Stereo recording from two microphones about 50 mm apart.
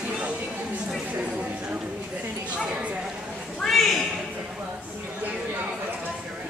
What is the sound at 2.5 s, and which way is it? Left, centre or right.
Bow-wow, centre.